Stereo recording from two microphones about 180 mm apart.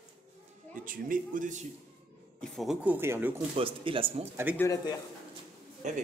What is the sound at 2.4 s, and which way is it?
Speech, centre (ahead or behind).